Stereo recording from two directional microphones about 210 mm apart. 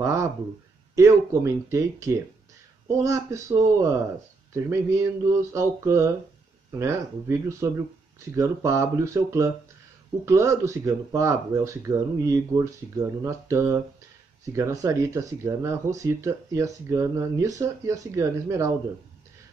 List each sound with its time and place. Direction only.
0.0 s speech: 15° right (ahead or behind)